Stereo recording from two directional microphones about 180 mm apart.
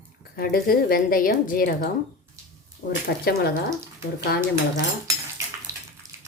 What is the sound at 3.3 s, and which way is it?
Speech, 60° left (ahead or behind).